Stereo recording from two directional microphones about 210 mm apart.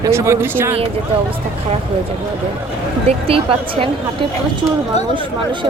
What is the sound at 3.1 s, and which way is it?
Speech, 25° right (ahead or behind).